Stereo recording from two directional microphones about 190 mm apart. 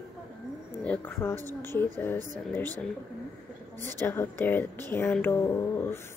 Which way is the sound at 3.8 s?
10° left (ahead or behind).